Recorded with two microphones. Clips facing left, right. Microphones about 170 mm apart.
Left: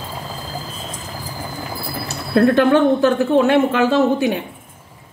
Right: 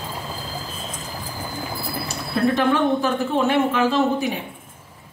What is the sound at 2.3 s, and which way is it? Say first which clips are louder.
Speech: left 6 dB; 65° left (ahead or behind).